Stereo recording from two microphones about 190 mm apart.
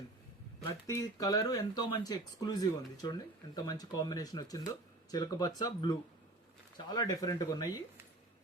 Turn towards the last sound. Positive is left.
turn(degrees=20)  # may be behind; listen again after turning